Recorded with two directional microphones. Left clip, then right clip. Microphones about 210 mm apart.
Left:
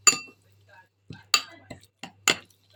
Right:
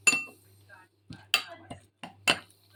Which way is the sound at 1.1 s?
35° right (ahead or behind).